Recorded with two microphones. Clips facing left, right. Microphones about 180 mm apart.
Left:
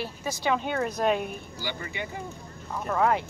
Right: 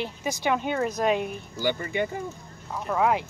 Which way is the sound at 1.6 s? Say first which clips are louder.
Right 10 dB; 50° right (ahead or behind).